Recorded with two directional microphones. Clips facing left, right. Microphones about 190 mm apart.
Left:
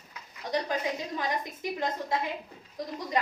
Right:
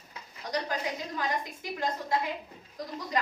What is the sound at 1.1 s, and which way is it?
A woman's voice, 20° left (ahead or behind).